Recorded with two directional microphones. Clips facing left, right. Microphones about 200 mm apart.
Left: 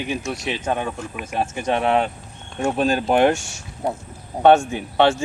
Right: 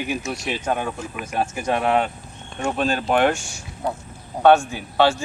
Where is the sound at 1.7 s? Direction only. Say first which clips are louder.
Left 1 dB; centre (ahead or behind).